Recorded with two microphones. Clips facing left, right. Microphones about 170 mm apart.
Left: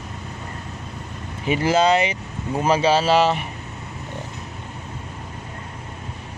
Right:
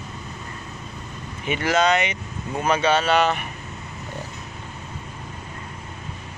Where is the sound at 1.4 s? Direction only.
30° left (ahead or behind).